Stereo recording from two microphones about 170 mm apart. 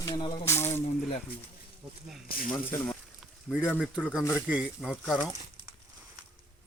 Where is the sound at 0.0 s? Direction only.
25° left (ahead or behind).